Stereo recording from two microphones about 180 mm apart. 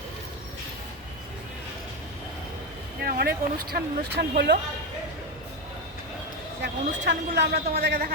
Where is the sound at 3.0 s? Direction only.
60° right (ahead or behind).